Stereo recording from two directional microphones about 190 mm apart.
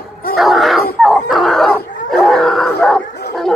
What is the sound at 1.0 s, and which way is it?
Dog, centre (ahead or behind).